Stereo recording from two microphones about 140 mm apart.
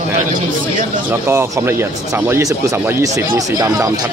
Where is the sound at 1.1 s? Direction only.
20° right (ahead or behind).